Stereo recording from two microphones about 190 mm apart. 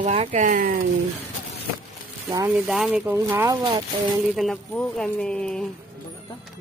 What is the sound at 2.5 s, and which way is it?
A woman's voice, centre (ahead or behind).